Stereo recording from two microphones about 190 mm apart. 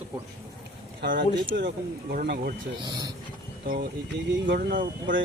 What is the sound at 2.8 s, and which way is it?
Speech, 20° right (ahead or behind).